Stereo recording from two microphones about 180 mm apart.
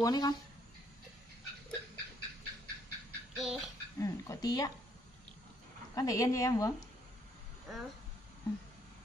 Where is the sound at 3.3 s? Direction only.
Centre (ahead or behind).